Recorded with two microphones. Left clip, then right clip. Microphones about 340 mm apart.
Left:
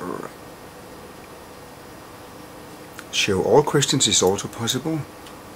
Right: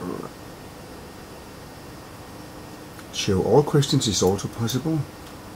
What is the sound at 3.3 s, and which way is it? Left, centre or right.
Speech, right.